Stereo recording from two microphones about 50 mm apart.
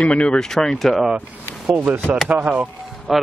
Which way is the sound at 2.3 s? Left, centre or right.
Right.